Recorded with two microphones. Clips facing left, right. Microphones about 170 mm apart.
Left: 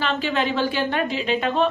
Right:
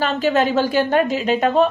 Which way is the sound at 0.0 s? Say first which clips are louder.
Right 5 dB; 45° right (ahead or behind).